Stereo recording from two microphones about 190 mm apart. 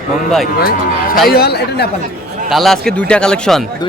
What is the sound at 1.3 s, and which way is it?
Speech, 55° left (ahead or behind).